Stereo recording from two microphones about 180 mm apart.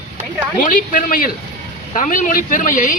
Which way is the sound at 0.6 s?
45° left (ahead or behind).